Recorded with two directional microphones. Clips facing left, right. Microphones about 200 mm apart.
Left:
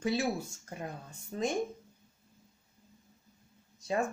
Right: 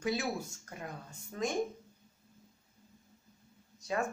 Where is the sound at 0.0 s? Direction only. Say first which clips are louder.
Left 3 dB; 25° left (ahead or behind).